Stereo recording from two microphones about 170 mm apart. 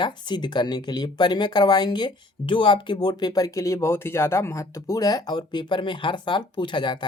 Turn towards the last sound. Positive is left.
turn(degrees=25)  # may be behind; listen again after turning